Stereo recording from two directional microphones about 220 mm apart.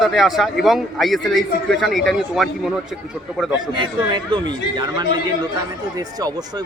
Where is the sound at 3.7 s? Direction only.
20° right (ahead or behind).